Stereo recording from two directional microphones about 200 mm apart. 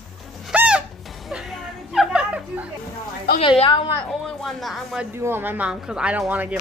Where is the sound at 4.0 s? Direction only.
Centre (ahead or behind).